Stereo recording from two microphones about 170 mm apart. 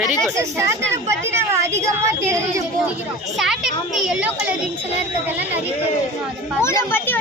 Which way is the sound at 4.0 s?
5° right (ahead or behind).